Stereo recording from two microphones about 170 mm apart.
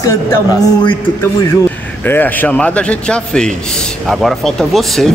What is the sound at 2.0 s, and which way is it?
A man's voice, 10° left (ahead or behind).